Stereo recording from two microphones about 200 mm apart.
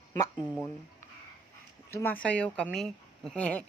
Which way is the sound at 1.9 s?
15° left (ahead or behind).